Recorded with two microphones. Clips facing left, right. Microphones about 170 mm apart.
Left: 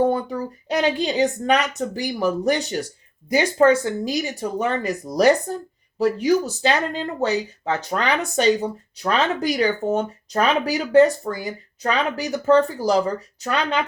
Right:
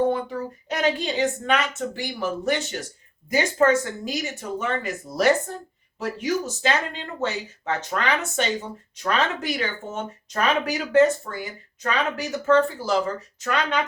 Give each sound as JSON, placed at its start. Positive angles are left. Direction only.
{"t": 0.1, "sound": "a woman's voice", "side_deg": 35}